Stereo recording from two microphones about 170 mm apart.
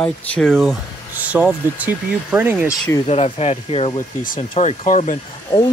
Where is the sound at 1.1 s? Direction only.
10° right (ahead or behind).